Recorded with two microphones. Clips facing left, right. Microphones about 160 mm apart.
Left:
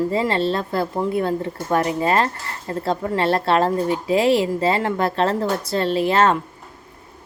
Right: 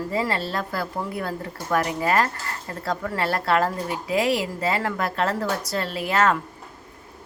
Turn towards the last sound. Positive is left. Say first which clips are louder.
# left 5 dB
turn(degrees=30)  # may be behind; listen again after turning